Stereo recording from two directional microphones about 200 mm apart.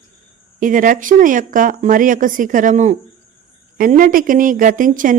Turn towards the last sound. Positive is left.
turn(degrees=-45)  # may be behind; listen again after turning